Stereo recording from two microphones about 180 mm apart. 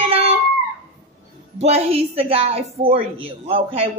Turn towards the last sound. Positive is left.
turn(degrees=-30)  # may be behind; listen again after turning